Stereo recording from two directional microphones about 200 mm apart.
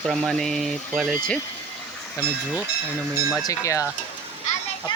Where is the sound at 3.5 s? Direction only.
15° left (ahead or behind).